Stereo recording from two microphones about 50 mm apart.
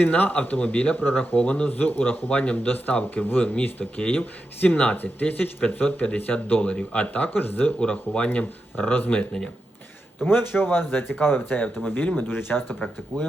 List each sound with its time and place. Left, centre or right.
0.0 s speech: left
7.8 s speech: left
8.8 s speech: left
10.2 s speech: left